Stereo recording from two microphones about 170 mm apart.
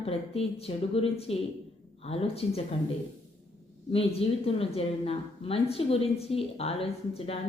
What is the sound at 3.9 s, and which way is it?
A woman's voice, 35° left (ahead or behind).